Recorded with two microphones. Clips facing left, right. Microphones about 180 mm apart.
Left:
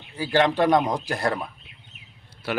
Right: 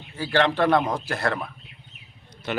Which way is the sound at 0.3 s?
15° left (ahead or behind).